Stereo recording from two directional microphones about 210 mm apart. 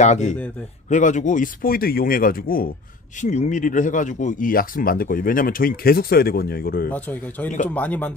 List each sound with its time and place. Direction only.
0.0 s speech: 35° left (ahead or behind)
6.9 s a man's voice: 10° left (ahead or behind)